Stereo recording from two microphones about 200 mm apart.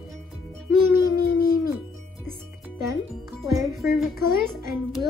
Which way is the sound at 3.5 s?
15° right (ahead or behind).